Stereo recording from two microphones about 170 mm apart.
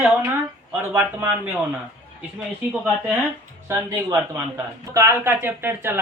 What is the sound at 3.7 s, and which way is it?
A man's voice, 15° right (ahead or behind).